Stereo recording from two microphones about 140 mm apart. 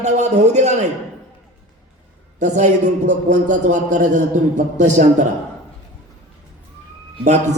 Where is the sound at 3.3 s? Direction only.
60° right (ahead or behind).